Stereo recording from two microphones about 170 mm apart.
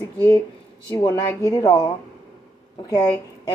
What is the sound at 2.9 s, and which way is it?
Speech, 25° left (ahead or behind).